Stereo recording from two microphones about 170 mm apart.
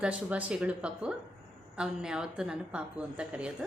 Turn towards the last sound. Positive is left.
turn(degrees=-5)  # may be behind; listen again after turning